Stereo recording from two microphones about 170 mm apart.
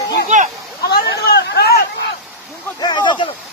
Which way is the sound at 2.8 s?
25° left (ahead or behind).